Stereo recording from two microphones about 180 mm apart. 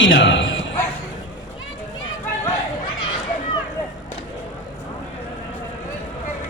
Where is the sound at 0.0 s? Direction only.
80° left.